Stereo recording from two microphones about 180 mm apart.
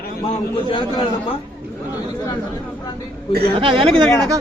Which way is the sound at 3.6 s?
30° right (ahead or behind).